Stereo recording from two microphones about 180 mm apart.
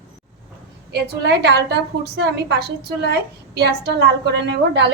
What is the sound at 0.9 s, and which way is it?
A woman's voice, 70° right (ahead or behind).